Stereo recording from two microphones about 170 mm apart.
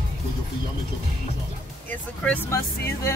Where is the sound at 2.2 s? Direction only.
10° left (ahead or behind).